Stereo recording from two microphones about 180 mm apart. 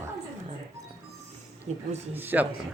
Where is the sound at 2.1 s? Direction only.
10° right (ahead or behind).